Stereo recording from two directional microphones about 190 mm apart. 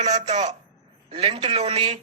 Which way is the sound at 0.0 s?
35° right (ahead or behind).